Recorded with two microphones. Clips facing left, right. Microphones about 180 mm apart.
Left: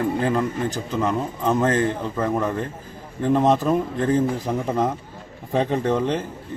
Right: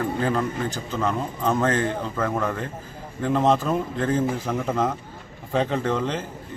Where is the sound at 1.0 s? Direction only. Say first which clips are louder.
Left 1 dB; 15° left (ahead or behind).